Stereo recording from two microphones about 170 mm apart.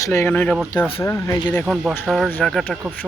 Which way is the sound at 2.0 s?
Centre (ahead or behind).